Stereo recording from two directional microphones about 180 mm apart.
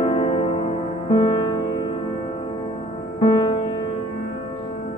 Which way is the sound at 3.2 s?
30° left (ahead or behind).